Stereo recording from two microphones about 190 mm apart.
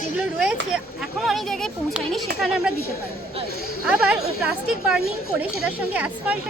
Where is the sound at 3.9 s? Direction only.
5° right (ahead or behind).